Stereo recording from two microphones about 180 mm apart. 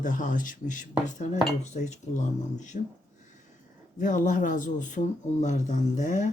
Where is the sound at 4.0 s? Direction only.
45° left (ahead or behind).